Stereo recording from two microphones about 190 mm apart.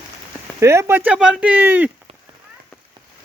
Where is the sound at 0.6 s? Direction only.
15° right (ahead or behind).